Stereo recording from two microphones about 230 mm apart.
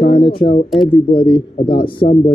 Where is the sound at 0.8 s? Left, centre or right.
Left.